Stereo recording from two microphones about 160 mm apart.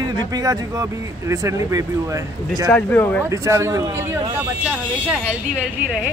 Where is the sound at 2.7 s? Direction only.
10° left (ahead or behind).